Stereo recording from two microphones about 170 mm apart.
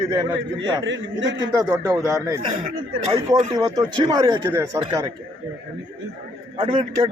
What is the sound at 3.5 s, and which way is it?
A man's voice, 20° right (ahead or behind).